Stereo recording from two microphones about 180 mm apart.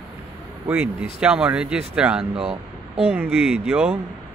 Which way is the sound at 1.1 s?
5° right (ahead or behind).